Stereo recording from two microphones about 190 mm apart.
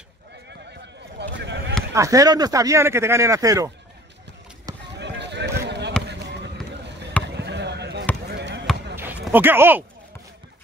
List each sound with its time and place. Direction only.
1.3 s a sound: 65° right (ahead or behind)
2.0 s speech: 15° right (ahead or behind)
5.0 s basketball bounce: 65° right (ahead or behind)
7.3 s basketball bounce: 65° right (ahead or behind)
9.2 s speech: 10° right (ahead or behind)